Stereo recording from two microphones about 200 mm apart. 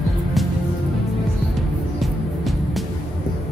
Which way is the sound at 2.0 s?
Centre (ahead or behind).